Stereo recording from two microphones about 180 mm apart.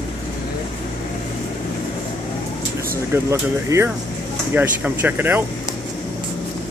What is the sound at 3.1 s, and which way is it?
Speech, 15° right (ahead or behind).